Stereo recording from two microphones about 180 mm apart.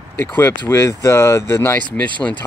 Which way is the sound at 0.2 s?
15° left (ahead or behind).